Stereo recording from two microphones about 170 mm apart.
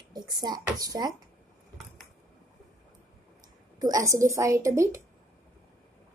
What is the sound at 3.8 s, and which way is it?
A woman's voice, 20° right (ahead or behind).